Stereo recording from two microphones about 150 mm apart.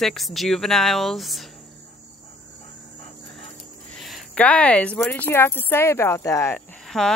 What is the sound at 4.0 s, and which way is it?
Speech, centre (ahead or behind).